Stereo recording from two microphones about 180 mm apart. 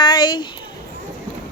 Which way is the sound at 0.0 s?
25° left (ahead or behind).